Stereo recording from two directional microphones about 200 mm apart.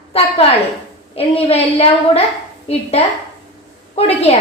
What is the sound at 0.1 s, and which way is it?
A woman's voice, 30° left (ahead or behind).